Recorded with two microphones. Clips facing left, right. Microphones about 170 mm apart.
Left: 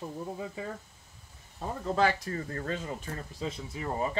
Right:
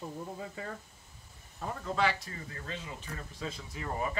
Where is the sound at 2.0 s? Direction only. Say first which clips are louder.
Left 4 dB; 45° left (ahead or behind).